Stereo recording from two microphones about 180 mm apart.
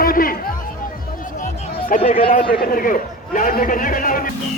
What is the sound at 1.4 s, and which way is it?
Music, 50° left (ahead or behind).